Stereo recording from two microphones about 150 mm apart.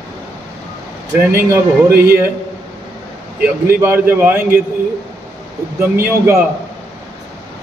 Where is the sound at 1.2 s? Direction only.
15° right (ahead or behind).